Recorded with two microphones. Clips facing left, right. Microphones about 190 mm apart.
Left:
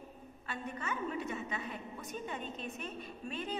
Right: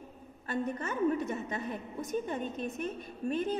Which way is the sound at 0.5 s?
45° right (ahead or behind).